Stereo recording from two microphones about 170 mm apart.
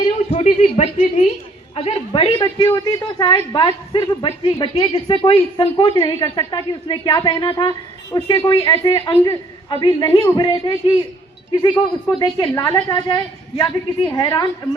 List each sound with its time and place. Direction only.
0.0 s a sound: 40° left (ahead or behind)
1.7 s a woman's voice: 30° left (ahead or behind)
11.6 s a man's voice: 25° left (ahead or behind)